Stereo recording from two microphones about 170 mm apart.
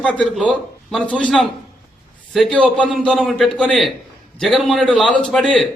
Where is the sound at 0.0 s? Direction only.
5° left (ahead or behind).